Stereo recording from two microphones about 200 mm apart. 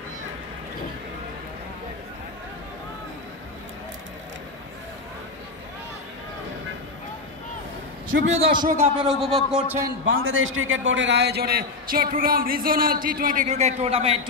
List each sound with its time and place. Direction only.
8.1 s a man's voice: 30° right (ahead or behind)
8.7 s a man's voice: 5° right (ahead or behind)
10.0 s a man's voice: 80° right; by 14.2 s 30° right (ahead or behind)